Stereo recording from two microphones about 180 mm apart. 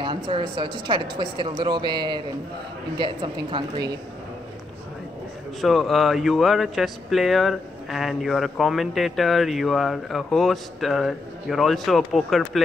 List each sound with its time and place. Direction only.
0.0 s a woman's voice: 30° right (ahead or behind)
5.6 s speech: centre (ahead or behind)